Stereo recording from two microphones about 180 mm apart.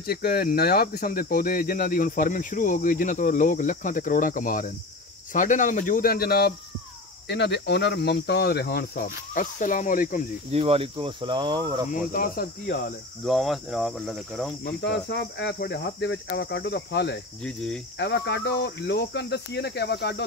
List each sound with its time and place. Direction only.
0.0 s speech: 60° left (ahead or behind)
7.2 s cricket: 70° left (ahead or behind); by 10.2 s 50° left (ahead or behind)
10.5 s speech: 35° right (ahead or behind)
11.9 s cricket: 55° left (ahead or behind)
13.2 s speech: centre (ahead or behind)
14.6 s speech: 65° left (ahead or behind)
17.4 s speech: 5° left (ahead or behind)
17.9 s speech: 70° left (ahead or behind)